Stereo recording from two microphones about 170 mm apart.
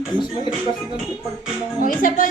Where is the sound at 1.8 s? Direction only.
55° left (ahead or behind).